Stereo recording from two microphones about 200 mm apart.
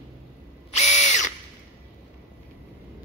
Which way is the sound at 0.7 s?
35° left (ahead or behind).